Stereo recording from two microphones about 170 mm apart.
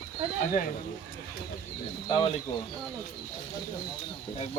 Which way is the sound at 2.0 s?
30° left (ahead or behind).